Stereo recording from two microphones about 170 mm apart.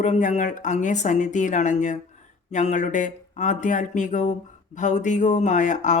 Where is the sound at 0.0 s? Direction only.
45° left (ahead or behind).